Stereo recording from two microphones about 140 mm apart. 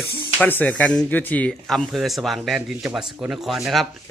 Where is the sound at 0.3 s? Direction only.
10° left (ahead or behind).